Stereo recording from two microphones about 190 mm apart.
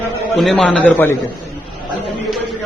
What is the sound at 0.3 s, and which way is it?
Speech, centre (ahead or behind).